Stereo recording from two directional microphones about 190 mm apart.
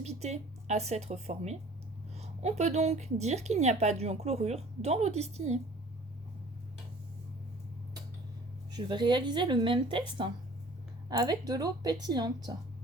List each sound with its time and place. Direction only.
0.0 s a woman's voice: 35° right (ahead or behind)
8.7 s speech: 25° right (ahead or behind)